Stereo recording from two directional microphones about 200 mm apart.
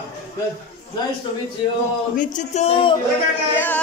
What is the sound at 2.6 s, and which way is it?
Speech, 30° left (ahead or behind).